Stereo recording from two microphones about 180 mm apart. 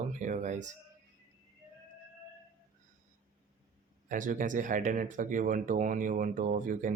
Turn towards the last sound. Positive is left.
turn(degrees=-45)  # may be behind; listen again after turning